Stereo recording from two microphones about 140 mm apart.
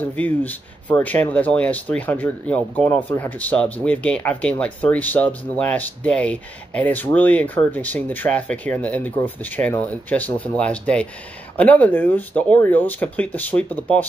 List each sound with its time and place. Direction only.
0.0 s speech: 10° left (ahead or behind)